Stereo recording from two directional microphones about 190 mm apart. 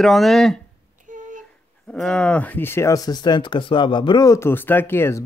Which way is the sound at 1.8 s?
5° left (ahead or behind).